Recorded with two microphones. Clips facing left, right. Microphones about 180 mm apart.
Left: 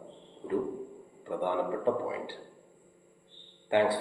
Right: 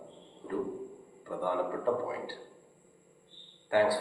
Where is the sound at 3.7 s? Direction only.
20° left (ahead or behind).